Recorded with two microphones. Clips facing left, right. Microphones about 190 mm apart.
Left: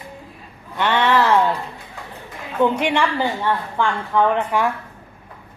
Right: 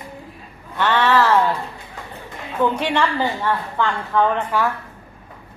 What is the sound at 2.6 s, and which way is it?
A woman's voice, 20° left (ahead or behind).